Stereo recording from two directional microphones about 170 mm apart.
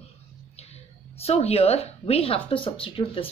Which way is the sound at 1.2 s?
35° left (ahead or behind).